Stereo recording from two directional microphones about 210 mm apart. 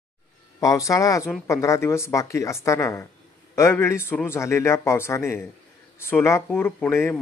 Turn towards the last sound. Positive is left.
turn(degrees=10)  # may be behind; listen again after turning